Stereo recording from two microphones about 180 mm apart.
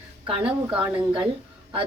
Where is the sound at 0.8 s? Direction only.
30° right (ahead or behind).